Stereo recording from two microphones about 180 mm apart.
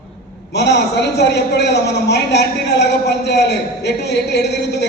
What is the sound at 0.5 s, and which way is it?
A man's voice, 70° left (ahead or behind).